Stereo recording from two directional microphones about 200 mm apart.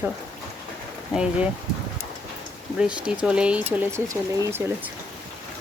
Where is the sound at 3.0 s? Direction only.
5° right (ahead or behind).